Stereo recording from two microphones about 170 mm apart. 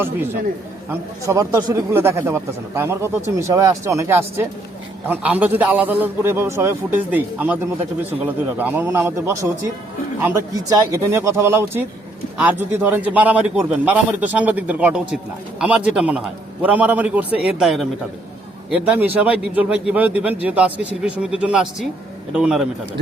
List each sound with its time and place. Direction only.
1.2 s a man's voice: 20° right (ahead or behind); by 22.6 s 5° right (ahead or behind)